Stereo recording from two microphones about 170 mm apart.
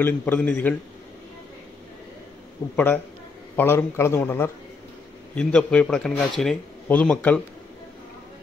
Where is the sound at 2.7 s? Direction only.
10° left (ahead or behind).